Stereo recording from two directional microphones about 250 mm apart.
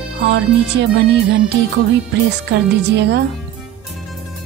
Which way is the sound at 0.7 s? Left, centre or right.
Right.